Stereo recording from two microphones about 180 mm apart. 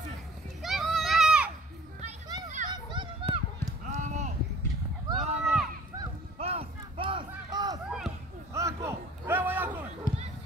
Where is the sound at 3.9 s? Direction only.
40° right (ahead or behind).